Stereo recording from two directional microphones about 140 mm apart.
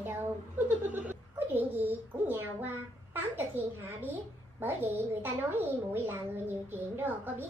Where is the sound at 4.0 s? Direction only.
15° right (ahead or behind).